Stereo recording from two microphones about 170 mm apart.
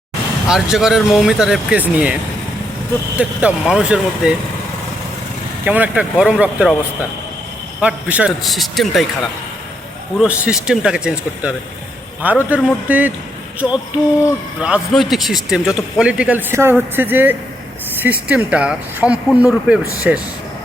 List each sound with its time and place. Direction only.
0.4 s speech: 5° right (ahead or behind)
3.2 s speech: 5° right (ahead or behind)
5.6 s speech: 10° right (ahead or behind)
7.8 s speech: 5° right (ahead or behind)